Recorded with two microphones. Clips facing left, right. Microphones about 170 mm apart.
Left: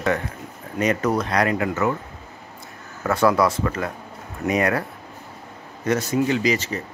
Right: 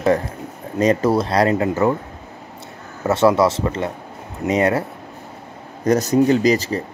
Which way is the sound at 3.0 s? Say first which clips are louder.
Right 4 dB; 25° right (ahead or behind).